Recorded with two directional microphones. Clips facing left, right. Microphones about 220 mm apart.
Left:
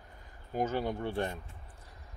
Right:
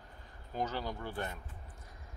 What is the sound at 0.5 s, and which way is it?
Speech, 25° left (ahead or behind).